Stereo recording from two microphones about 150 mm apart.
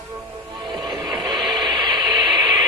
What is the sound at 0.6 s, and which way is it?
Music, 30° right (ahead or behind).